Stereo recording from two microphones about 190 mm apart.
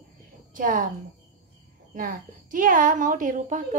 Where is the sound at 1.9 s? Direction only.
45° right (ahead or behind).